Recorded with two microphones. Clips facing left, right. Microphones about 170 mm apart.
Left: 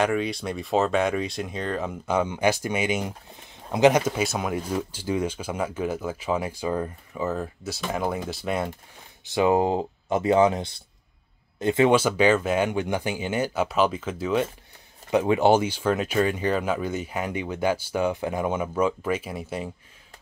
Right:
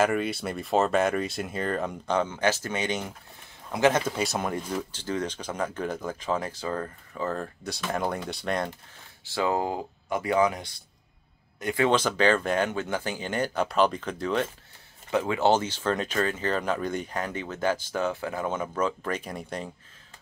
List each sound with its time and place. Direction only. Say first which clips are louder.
0.0 s speech: left 1 dB; 5° right (ahead or behind); by 4.0 s 20° left (ahead or behind)
4.1 s speech: left 2 dB; centre (ahead or behind)
9.2 s speech: left 6 dB; 20° left (ahead or behind)
11.9 s speech: left 3 dB; 10° left (ahead or behind)